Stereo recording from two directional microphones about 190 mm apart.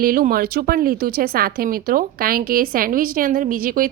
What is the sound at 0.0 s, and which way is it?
A woman's voice, 50° right (ahead or behind).